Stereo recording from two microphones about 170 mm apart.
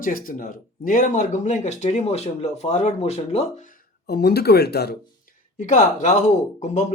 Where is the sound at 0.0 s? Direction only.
55° left (ahead or behind).